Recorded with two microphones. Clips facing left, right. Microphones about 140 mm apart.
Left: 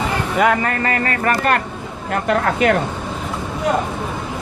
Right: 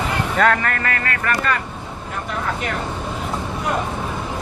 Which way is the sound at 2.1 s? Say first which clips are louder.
Left 8 dB; 75° left (ahead or behind).